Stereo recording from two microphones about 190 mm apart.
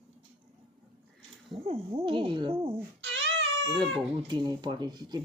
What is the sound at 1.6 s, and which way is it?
Speech, 30° right (ahead or behind).